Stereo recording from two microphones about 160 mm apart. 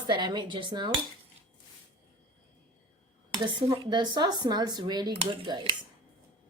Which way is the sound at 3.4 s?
30° right (ahead or behind).